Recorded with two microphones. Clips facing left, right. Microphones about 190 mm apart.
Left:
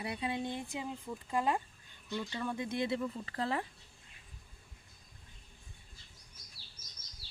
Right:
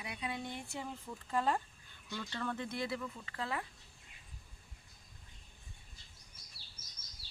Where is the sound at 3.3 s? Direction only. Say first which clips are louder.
Left 3 dB; 35° left (ahead or behind).